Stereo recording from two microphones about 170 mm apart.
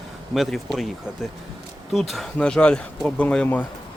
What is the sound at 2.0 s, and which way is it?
A man's voice, centre (ahead or behind).